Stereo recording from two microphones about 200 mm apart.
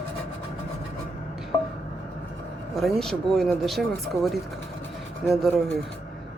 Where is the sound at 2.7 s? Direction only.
Centre (ahead or behind).